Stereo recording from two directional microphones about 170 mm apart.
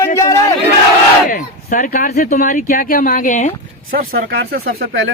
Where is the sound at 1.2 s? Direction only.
50° left (ahead or behind).